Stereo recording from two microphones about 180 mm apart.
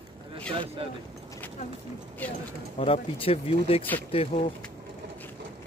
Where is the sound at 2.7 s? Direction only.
35° left (ahead or behind).